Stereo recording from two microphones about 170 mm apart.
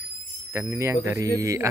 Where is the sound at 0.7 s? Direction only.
15° right (ahead or behind).